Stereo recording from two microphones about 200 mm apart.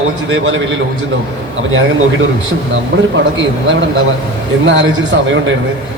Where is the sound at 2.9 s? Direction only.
55° right (ahead or behind).